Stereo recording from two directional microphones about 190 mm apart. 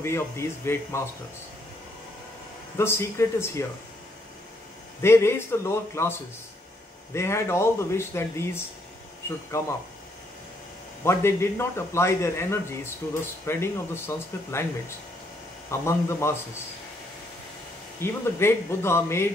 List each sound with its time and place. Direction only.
0.0 s a man's voice: 15° left (ahead or behind)
2.8 s a man's voice: 15° left (ahead or behind)
5.0 s a man's voice: 15° left (ahead or behind)
7.2 s a man's voice: 15° left (ahead or behind)
9.5 s a man's voice: 15° left (ahead or behind)
11.1 s a man's voice: 15° left (ahead or behind)
15.7 s a man's voice: 15° left (ahead or behind)
18.0 s a man's voice: 15° left (ahead or behind)